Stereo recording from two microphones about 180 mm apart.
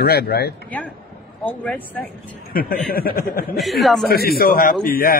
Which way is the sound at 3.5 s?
Centre (ahead or behind).